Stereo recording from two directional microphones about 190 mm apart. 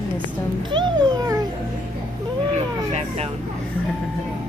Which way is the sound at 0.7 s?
25° right (ahead or behind).